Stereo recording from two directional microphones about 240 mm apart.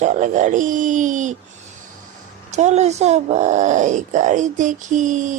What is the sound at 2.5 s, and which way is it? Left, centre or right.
Speech, right.